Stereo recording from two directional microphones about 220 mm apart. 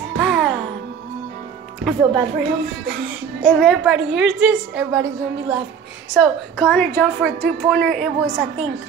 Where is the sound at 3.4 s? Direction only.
Centre (ahead or behind).